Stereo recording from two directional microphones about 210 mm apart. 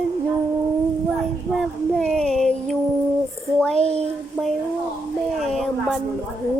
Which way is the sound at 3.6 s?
5° left (ahead or behind).